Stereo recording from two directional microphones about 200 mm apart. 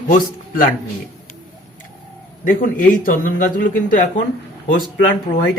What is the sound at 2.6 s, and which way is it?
A man's voice, 45° left (ahead or behind).